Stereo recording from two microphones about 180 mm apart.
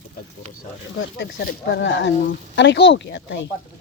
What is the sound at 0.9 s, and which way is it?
Speech, 65° left (ahead or behind).